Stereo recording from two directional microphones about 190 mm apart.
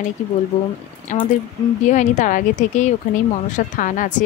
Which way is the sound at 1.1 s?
40° left (ahead or behind).